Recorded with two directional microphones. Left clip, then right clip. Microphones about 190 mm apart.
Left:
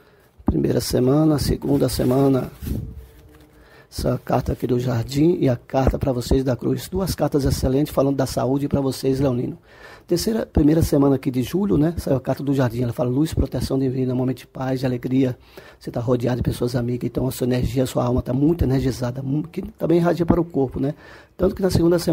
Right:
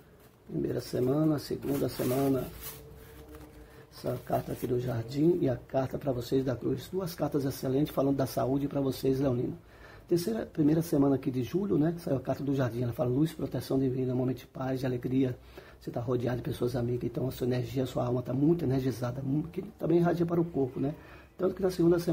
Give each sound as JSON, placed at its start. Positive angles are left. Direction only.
{"t": 0.6, "sound": "speech", "side_deg": 45}
{"t": 4.0, "sound": "speech", "side_deg": 40}